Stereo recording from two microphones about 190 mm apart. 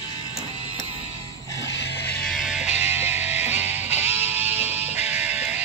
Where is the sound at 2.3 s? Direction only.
Centre (ahead or behind).